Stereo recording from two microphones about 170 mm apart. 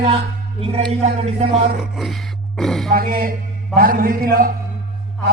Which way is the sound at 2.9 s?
60° right (ahead or behind).